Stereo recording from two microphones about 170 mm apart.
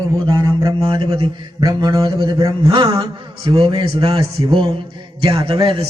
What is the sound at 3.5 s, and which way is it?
A man's voice, 30° right (ahead or behind).